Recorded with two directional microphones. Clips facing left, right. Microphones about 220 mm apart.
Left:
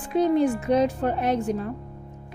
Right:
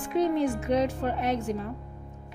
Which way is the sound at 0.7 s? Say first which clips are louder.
Left 4 dB; 40° left (ahead or behind).